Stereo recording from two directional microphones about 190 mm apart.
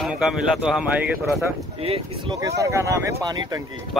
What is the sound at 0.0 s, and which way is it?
Speech, centre (ahead or behind).